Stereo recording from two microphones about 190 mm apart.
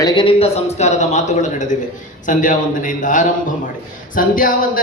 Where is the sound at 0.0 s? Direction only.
25° left (ahead or behind).